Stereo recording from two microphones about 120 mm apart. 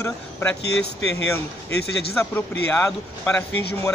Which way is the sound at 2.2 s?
20° left (ahead or behind).